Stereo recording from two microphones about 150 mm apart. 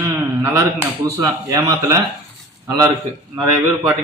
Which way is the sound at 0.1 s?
20° right (ahead or behind).